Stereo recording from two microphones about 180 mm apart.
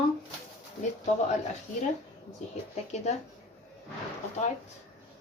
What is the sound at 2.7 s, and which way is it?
Speech, 40° left (ahead or behind).